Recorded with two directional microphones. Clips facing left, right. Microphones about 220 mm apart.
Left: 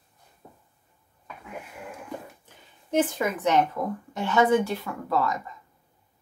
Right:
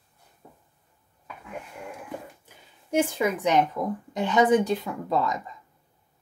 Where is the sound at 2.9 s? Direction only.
10° right (ahead or behind).